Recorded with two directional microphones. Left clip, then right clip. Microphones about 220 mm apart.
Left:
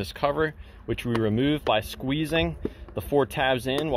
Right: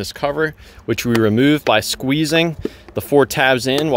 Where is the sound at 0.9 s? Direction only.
35° right (ahead or behind).